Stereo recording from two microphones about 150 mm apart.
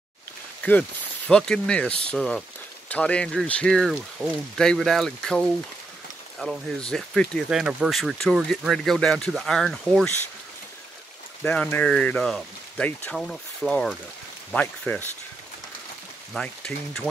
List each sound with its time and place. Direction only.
0.7 s speech: 10° left (ahead or behind)
11.4 s speech: 10° left (ahead or behind)
16.3 s speech: 5° left (ahead or behind)